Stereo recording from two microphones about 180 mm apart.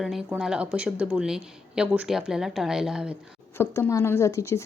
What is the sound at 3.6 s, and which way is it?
Speech, 15° left (ahead or behind).